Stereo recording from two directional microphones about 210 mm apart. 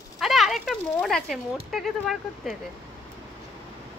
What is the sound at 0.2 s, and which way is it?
Speech, centre (ahead or behind).